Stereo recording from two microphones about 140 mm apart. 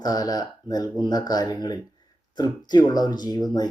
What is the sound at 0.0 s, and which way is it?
Speech, 30° left (ahead or behind).